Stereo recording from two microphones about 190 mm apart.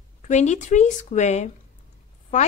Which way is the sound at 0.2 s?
40° left (ahead or behind).